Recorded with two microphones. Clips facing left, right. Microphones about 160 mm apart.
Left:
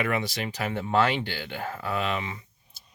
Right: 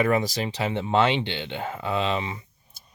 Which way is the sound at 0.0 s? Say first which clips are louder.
Right 5 dB; 40° right (ahead or behind).